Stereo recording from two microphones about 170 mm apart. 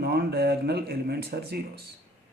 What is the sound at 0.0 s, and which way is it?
Speech, 70° right (ahead or behind).